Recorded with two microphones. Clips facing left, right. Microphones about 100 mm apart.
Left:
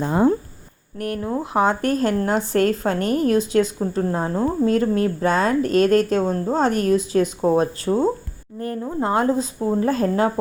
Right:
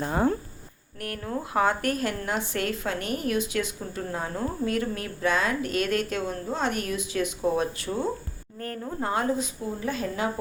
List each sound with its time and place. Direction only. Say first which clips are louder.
0.0 s speech: left 7 dB; 20° left (ahead or behind)
8.5 s speech: left 7 dB; 20° left (ahead or behind); by 10.3 s 40° left (ahead or behind)